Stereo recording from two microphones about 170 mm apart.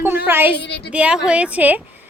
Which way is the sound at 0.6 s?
75° left (ahead or behind).